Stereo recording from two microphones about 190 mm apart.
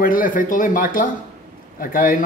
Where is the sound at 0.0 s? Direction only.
45° left (ahead or behind).